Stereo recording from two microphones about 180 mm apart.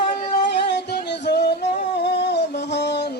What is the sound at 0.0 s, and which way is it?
Music, 65° left (ahead or behind).